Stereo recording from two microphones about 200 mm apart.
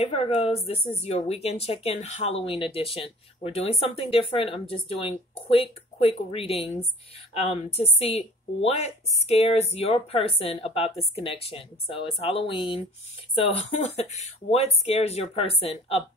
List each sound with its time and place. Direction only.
0.0 s speech: 30° left (ahead or behind)